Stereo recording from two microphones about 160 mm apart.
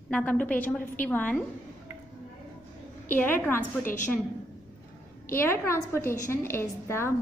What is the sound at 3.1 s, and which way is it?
Speech, 10° left (ahead or behind).